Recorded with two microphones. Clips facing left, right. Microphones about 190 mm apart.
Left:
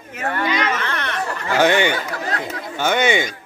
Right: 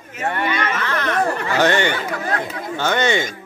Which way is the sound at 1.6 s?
10° left (ahead or behind).